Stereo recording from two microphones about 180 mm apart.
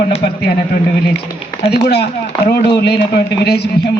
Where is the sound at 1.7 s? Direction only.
65° left (ahead or behind).